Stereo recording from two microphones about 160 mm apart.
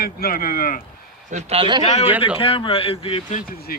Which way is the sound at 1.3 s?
35° right (ahead or behind).